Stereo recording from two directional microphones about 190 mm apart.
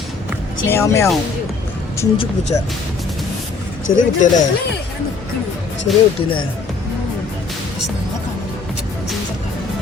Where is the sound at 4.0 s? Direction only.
40° left (ahead or behind).